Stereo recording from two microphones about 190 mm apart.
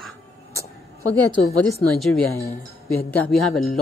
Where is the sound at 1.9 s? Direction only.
Centre (ahead or behind).